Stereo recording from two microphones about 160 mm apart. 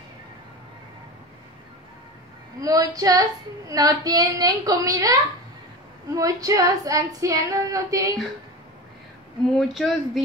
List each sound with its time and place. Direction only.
2.6 s a woman's voice: 20° right (ahead or behind)
9.6 s speech: centre (ahead or behind)